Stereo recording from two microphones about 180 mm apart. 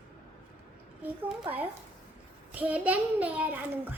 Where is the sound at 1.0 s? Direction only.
10° right (ahead or behind).